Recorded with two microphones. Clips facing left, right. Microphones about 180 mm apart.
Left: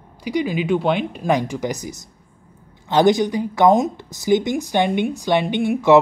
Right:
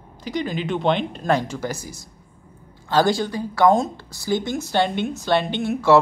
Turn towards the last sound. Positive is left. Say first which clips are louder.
# left 3 dB
turn(degrees=15)  # may be behind; listen again after turning